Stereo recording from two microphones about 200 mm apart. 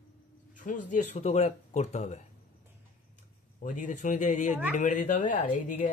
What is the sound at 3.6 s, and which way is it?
Speech, 40° left (ahead or behind).